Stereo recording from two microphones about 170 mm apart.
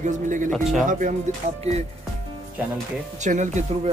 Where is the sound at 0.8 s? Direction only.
50° right (ahead or behind).